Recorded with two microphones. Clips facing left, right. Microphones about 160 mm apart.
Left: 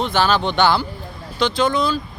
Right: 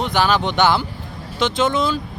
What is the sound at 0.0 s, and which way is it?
Speech, 15° right (ahead or behind).